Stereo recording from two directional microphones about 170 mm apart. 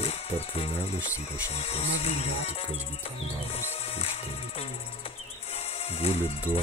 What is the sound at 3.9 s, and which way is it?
Speech, 40° left (ahead or behind).